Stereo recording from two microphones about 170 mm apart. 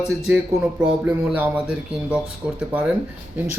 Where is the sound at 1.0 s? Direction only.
5° right (ahead or behind).